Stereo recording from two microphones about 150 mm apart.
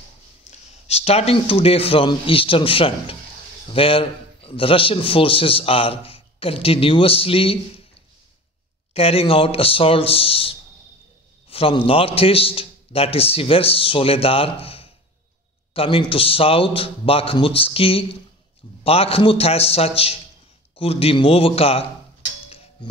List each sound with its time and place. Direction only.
0.5 s a man's voice: 40° left (ahead or behind)
8.9 s a man's voice: 40° left (ahead or behind)